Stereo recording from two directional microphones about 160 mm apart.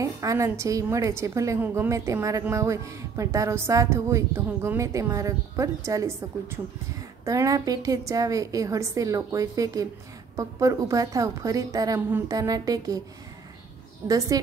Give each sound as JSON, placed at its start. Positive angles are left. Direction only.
{"t": 0.0, "sound": "a woman's voice", "side_deg": -20}
{"t": 14.0, "sound": "a woman's voice", "side_deg": -20}